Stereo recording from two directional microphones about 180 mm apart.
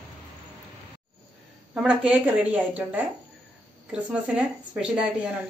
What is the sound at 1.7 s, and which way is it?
A woman's voice, 5° right (ahead or behind).